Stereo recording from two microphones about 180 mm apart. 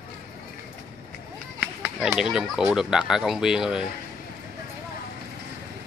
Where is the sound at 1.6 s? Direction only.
Centre (ahead or behind).